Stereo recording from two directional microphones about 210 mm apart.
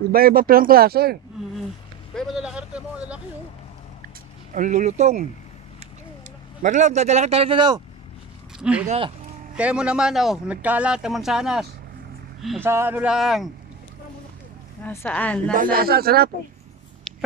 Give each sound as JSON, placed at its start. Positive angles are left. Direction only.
{"t": 0.1, "sound": "speech", "side_deg": -45}
{"t": 2.1, "sound": "speech", "side_deg": 0}
{"t": 4.6, "sound": "a man's voice", "side_deg": -35}
{"t": 6.6, "sound": "a man's voice", "side_deg": -35}
{"t": 8.5, "sound": "speech", "side_deg": -5}
{"t": 8.8, "sound": "speech", "side_deg": -30}
{"t": 9.6, "sound": "speech", "side_deg": -5}
{"t": 12.6, "sound": "speech", "side_deg": -10}
{"t": 14.8, "sound": "speech", "side_deg": 10}
{"t": 15.5, "sound": "speech", "side_deg": -40}